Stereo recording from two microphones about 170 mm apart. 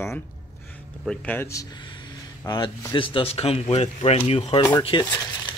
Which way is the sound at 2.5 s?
25° left (ahead or behind).